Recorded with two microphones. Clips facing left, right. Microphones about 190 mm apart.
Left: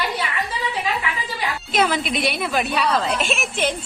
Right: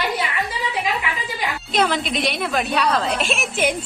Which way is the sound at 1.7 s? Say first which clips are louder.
Even; centre (ahead or behind).